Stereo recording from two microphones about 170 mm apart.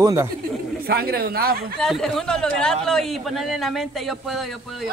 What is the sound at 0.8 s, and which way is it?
Speech, 60° right (ahead or behind).